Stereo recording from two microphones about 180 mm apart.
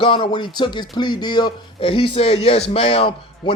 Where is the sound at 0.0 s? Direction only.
30° left (ahead or behind).